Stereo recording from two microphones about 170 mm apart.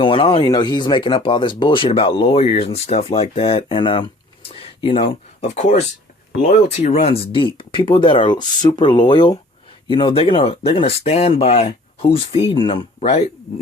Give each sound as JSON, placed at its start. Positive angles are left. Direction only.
{"t": 0.0, "sound": "speech", "side_deg": 30}
{"t": 5.0, "sound": "speech", "side_deg": 45}
{"t": 6.8, "sound": "speech", "side_deg": 35}